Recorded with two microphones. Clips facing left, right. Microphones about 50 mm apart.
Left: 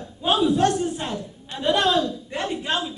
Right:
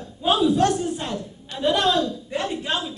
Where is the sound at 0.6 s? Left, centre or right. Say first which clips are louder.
Even; centre.